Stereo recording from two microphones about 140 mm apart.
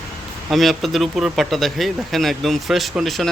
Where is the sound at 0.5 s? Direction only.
Centre (ahead or behind).